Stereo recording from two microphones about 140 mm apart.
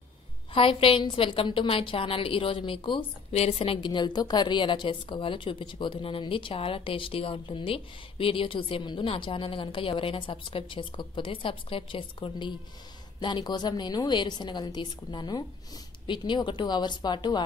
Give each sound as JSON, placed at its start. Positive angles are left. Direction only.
{"t": 0.5, "sound": "a woman's voice", "side_deg": 40}